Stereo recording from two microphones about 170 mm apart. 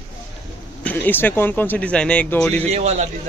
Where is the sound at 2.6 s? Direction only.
40° right (ahead or behind).